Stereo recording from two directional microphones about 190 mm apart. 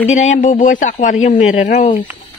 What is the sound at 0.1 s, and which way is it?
Speech, 40° left (ahead or behind).